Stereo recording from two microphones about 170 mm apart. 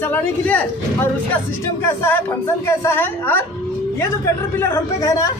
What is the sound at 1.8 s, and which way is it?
Speech, 15° left (ahead or behind).